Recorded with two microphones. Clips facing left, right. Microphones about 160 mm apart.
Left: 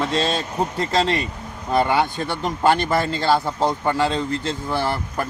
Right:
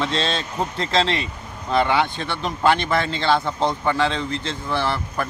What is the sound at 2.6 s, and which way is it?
Speech, 45° left (ahead or behind).